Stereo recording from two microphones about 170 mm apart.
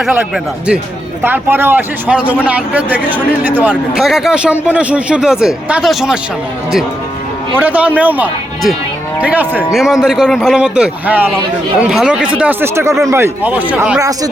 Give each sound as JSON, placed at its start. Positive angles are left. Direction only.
{"t": 0.0, "sound": "speech", "side_deg": -10}
{"t": 7.6, "sound": "speech", "side_deg": -10}
{"t": 14.0, "sound": "speech", "side_deg": -20}